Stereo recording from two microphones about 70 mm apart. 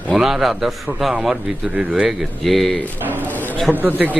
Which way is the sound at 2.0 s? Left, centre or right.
Centre.